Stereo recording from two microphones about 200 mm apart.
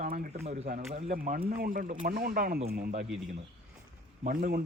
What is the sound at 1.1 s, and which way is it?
A man's voice, 45° right (ahead or behind).